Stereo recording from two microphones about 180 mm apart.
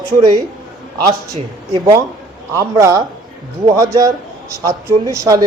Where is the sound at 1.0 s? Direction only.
20° right (ahead or behind).